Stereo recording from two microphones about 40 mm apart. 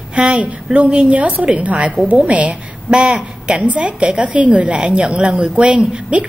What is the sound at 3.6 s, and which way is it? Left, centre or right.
A woman's voice, right.